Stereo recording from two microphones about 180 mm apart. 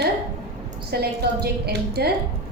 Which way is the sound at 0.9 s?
60° right (ahead or behind).